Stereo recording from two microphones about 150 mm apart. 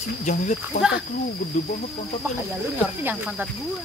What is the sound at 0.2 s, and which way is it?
Speech, 55° left (ahead or behind).